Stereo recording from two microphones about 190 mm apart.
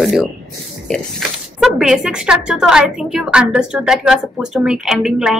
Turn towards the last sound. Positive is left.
turn(degrees=0)  # may be behind; listen again after turning